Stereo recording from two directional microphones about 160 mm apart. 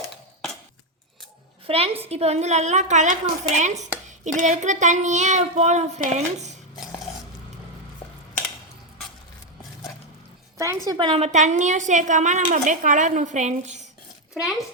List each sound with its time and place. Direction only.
1.6 s a woman's voice: 35° right (ahead or behind)
8.0 s a sound: 35° left (ahead or behind)
10.8 s a woman's voice: 25° right (ahead or behind)
11.1 s a woman's voice: 45° right (ahead or behind)